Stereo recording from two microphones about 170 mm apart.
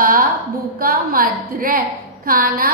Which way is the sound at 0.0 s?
55° right (ahead or behind).